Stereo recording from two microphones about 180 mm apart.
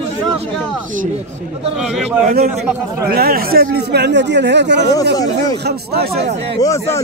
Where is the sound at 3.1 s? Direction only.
60° right (ahead or behind).